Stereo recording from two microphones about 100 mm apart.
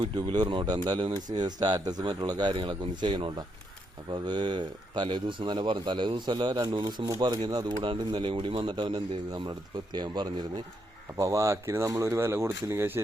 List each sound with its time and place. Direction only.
0.0 s speech: 50° right (ahead or behind)
2.5 s speech: 60° right (ahead or behind)
8.7 s speech: 50° right (ahead or behind)
11.2 s speech: 35° right (ahead or behind)